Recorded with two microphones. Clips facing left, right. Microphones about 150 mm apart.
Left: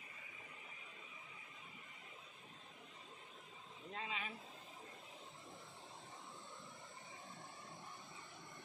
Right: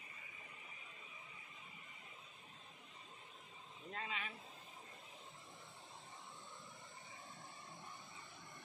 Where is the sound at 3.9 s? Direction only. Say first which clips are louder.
Even; 25° left (ahead or behind).